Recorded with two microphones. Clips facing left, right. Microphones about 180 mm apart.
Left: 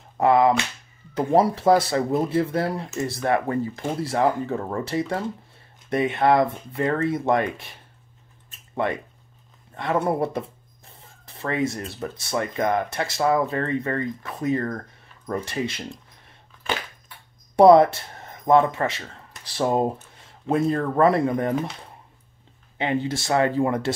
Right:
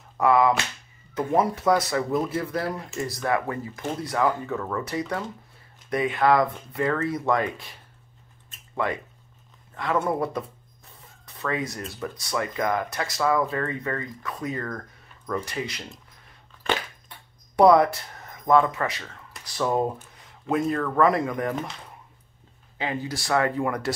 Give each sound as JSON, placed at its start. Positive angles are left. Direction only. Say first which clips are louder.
{"t": 0.2, "sound": "speech", "louder": "left 2 dB", "side_deg": 25}
{"t": 9.9, "sound": "speech", "louder": "left 2 dB", "side_deg": 30}
{"t": 17.6, "sound": "speech", "louder": "left 4 dB", "side_deg": 25}
{"t": 22.8, "sound": "speech", "louder": "left 5 dB", "side_deg": 25}